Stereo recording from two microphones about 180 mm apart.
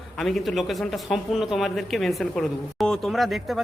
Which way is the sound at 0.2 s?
Centre (ahead or behind).